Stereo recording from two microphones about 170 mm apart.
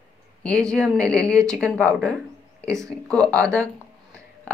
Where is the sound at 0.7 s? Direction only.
5° left (ahead or behind).